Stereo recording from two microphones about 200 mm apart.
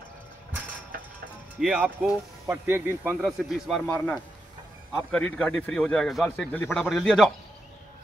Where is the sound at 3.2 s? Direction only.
Centre (ahead or behind).